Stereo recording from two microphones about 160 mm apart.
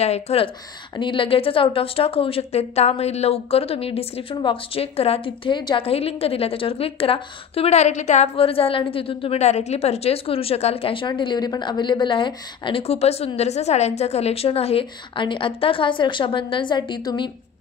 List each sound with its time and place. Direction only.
0.0 s a woman's voice: 40° left (ahead or behind)